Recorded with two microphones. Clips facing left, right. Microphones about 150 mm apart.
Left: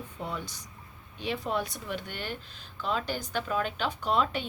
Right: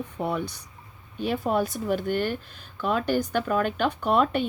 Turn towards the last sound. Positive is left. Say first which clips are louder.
# right 6 dB
turn(degrees=-55)  # may be behind; listen again after turning